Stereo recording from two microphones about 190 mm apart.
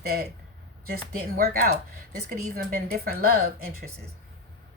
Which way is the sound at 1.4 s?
55° right (ahead or behind).